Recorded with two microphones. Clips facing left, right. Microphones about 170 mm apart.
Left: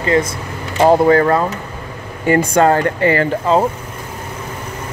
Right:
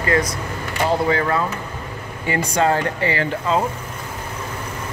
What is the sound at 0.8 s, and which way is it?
Speech, 45° left (ahead or behind).